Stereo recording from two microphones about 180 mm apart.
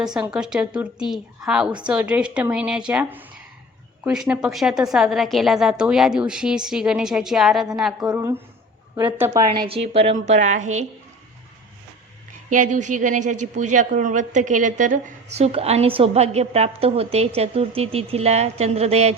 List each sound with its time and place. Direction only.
0.0 s a woman's voice: 5° right (ahead or behind)
8.0 s a woman's voice: 15° right (ahead or behind)
9.6 s a woman's voice: 30° right (ahead or behind)
12.5 s a woman's voice: 45° right (ahead or behind)